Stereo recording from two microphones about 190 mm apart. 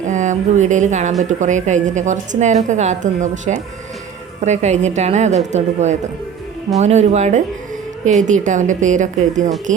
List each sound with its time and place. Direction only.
0.0 s a woman's voice: 40° right (ahead or behind)